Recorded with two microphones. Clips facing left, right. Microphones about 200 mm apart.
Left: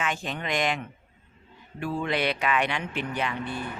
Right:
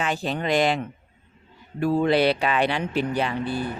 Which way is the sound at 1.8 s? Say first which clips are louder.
Right 8 dB; 35° right (ahead or behind).